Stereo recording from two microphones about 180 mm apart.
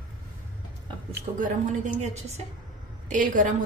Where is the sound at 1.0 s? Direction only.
45° right (ahead or behind).